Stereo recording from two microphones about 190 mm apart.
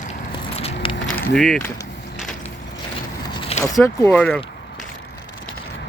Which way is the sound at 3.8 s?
10° left (ahead or behind).